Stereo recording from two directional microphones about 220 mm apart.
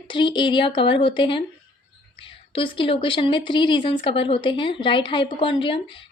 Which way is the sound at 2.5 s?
25° left (ahead or behind).